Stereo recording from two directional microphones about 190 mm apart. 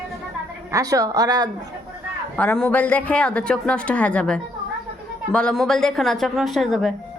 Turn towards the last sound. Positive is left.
turn(degrees=0)  # may be behind; listen again after turning